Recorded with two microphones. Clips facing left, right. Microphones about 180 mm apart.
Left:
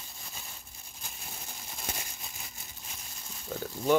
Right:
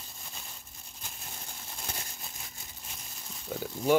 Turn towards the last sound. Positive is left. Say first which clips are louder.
# right 1 dB
turn(degrees=-5)  # may be behind; listen again after turning